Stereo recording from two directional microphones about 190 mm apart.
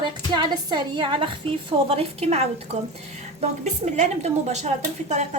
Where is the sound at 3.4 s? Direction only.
40° right (ahead or behind).